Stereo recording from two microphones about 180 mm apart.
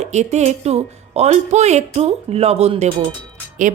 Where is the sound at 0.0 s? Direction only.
40° right (ahead or behind).